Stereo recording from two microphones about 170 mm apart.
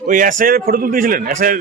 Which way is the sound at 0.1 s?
50° right (ahead or behind).